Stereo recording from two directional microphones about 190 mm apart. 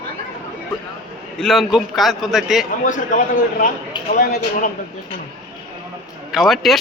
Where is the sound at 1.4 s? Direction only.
Centre (ahead or behind).